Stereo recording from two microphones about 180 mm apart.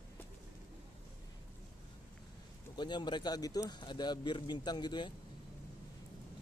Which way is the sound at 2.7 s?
25° left (ahead or behind).